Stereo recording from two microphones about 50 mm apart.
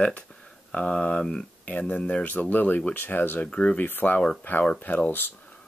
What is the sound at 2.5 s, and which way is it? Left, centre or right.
Speech, left.